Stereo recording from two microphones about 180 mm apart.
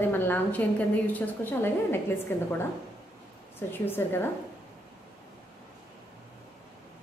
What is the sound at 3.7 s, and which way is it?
Speech, 10° left (ahead or behind).